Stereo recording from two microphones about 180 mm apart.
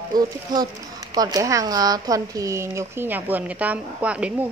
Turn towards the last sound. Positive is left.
turn(degrees=-5)  # may be behind; listen again after turning